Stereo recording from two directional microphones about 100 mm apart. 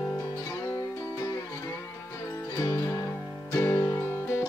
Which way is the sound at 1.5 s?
25° left (ahead or behind).